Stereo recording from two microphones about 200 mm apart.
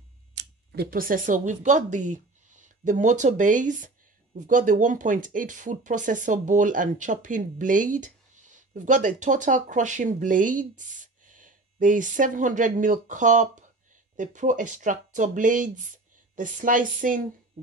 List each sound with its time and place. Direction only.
0.4 s speech: 55° right (ahead or behind)